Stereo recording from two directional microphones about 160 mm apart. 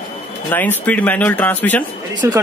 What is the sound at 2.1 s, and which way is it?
Speech, 25° right (ahead or behind).